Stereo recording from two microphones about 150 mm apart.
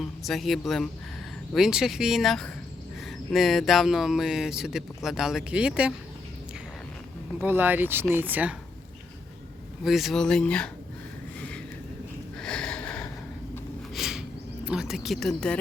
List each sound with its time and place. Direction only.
0.0 s speech: centre (ahead or behind)
7.4 s speech: 15° right (ahead or behind)
9.8 s speech: centre (ahead or behind)
12.4 s sniff: 5° left (ahead or behind)
13.9 s a sound: 5° right (ahead or behind)